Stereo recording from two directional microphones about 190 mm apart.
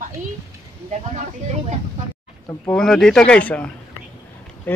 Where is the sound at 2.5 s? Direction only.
5° left (ahead or behind).